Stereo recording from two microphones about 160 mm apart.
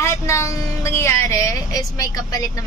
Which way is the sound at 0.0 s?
20° left (ahead or behind).